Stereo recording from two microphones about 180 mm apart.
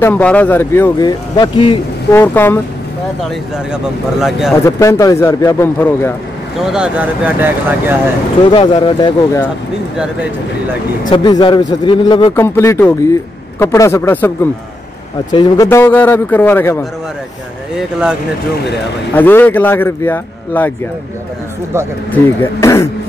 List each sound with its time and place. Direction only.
0.0 s speech: 5° left (ahead or behind); by 1.8 s 25° left (ahead or behind)
2.1 s speech: 10° left (ahead or behind)
4.2 s speech: centre (ahead or behind)
4.6 s speech: 15° left (ahead or behind)
6.6 s speech: 5° right (ahead or behind)
8.5 s speech: 25° left (ahead or behind)
11.1 s speech: 25° left (ahead or behind)
12.4 s speech: 15° left (ahead or behind)
19.1 s speech: 10° left (ahead or behind)
22.1 s speech: 15° left (ahead or behind)